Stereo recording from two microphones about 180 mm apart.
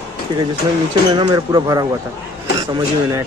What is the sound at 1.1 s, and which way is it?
Speech, 25° right (ahead or behind).